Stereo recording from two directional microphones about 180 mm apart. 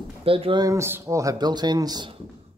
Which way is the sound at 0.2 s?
30° right (ahead or behind).